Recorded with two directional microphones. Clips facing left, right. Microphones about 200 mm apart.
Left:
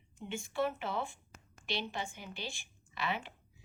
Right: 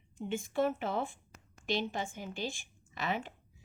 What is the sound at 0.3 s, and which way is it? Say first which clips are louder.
Speech: right 3 dB; 50° right (ahead or behind).